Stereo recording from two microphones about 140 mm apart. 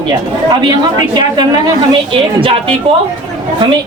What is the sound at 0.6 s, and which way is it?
A woman's voice, 30° right (ahead or behind).